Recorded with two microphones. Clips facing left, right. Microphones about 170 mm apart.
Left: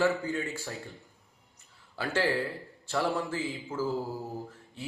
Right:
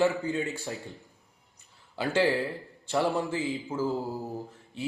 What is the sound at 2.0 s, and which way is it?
A man's voice, 20° right (ahead or behind).